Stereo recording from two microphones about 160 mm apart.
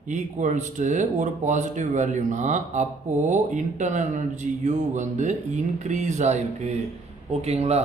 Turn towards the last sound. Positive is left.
turn(degrees=-40)  # may be behind; listen again after turning